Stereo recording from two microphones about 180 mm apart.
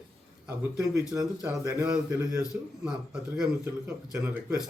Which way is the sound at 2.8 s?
5° right (ahead or behind).